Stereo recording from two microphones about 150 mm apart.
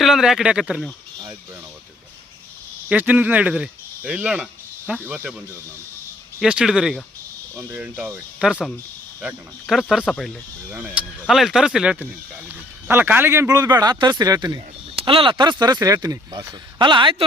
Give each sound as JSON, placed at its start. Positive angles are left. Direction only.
{"t": 0.0, "sound": "speech", "side_deg": 0}
{"t": 2.9, "sound": "speech", "side_deg": -10}
{"t": 7.5, "sound": "speech", "side_deg": -15}
{"t": 14.9, "sound": "speech", "side_deg": -35}